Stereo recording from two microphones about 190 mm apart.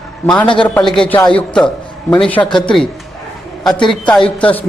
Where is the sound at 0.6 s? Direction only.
5° left (ahead or behind).